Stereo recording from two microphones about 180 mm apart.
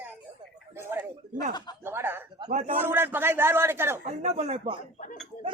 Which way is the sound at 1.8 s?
10° right (ahead or behind).